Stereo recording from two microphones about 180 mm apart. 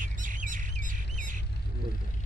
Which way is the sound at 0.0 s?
45° right (ahead or behind).